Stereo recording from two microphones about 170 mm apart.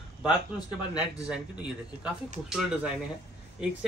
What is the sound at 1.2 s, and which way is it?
Speech, 5° right (ahead or behind).